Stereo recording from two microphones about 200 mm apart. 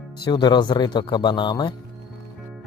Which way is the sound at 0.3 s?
20° left (ahead or behind).